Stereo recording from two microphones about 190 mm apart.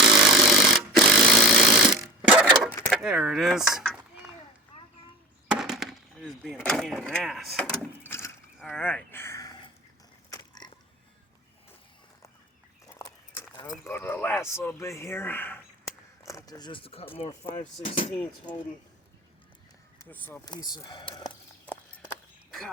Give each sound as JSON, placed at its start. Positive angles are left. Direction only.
{"t": 0.0, "sound": "tools", "side_deg": 0}
{"t": 2.2, "sound": "clock", "side_deg": -5}
{"t": 2.6, "sound": "speech", "side_deg": 5}
{"t": 4.7, "sound": "a sound", "side_deg": 35}
{"t": 5.5, "sound": "a sound", "side_deg": 0}
{"t": 13.0, "sound": "horse", "side_deg": 20}
{"t": 13.8, "sound": "speech", "side_deg": 10}
{"t": 20.0, "sound": "speech", "side_deg": 10}
{"t": 20.4, "sound": "speech", "side_deg": 20}
{"t": 22.1, "sound": "a sound", "side_deg": 5}